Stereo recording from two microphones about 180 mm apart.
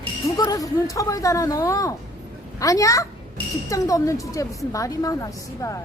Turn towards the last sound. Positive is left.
turn(degrees=15)  # may be behind; listen again after turning